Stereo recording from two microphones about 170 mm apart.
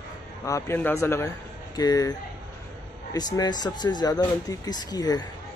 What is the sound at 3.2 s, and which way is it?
Speech, 25° left (ahead or behind).